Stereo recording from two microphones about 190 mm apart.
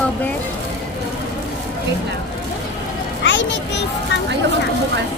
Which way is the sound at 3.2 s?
70° left (ahead or behind).